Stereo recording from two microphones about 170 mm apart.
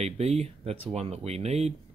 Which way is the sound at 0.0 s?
40° right (ahead or behind).